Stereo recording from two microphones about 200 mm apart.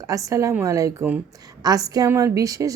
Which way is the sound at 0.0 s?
15° right (ahead or behind).